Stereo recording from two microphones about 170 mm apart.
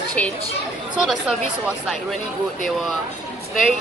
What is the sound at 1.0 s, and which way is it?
Speech, 5° right (ahead or behind).